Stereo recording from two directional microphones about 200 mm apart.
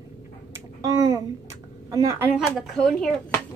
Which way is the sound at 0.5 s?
15° right (ahead or behind).